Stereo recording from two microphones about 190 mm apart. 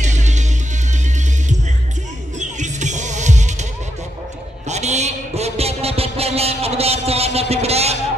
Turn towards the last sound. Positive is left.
turn(degrees=-35)  # may be behind; listen again after turning